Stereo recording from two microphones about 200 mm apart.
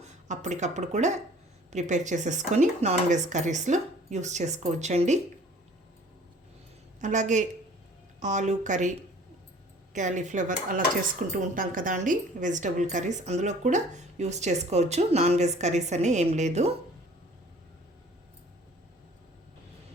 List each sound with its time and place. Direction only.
0.0 s a woman's voice: 35° right (ahead or behind)
7.0 s a woman's voice: 35° right (ahead or behind)